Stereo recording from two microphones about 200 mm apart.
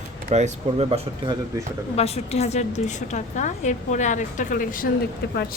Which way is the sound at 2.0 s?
30° left (ahead or behind).